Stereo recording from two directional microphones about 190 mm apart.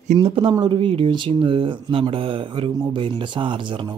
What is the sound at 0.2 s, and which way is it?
Speech, 25° right (ahead or behind).